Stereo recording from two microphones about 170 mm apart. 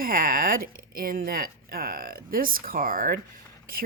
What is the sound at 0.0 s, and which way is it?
Speech, 55° right (ahead or behind).